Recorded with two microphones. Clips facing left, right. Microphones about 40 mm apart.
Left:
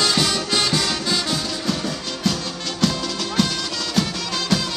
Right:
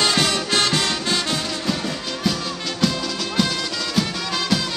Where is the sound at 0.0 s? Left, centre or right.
Right.